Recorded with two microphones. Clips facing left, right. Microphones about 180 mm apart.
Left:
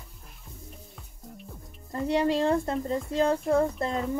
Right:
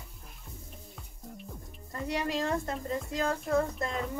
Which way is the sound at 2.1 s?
30° left (ahead or behind).